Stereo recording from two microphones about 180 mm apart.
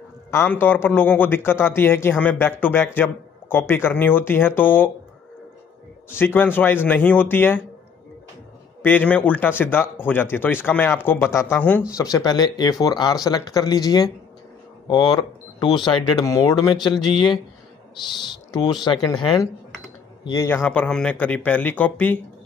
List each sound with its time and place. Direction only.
0.3 s speech: 15° left (ahead or behind)
6.0 s speech: 10° left (ahead or behind)
8.8 s speech: 10° left (ahead or behind)